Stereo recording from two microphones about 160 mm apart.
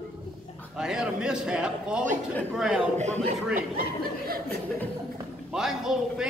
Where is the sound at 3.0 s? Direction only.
45° right (ahead or behind).